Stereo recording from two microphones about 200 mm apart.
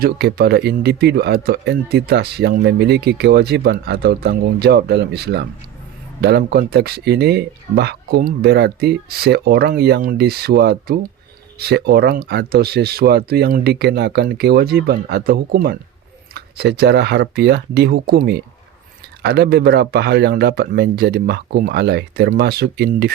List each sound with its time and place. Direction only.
0.0 s a man's voice: 50° right (ahead or behind)